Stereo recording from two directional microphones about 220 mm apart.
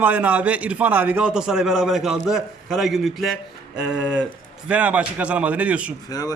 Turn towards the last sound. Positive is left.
turn(degrees=15)  # may be behind; listen again after turning